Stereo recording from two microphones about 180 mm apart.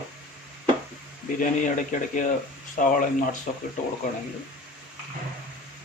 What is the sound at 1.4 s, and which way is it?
Speech, 45° left (ahead or behind).